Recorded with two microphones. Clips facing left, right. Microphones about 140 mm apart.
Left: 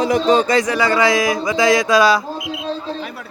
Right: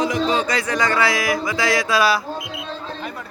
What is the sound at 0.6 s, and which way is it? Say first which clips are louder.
Speech: left 4 dB; 10° left (ahead or behind).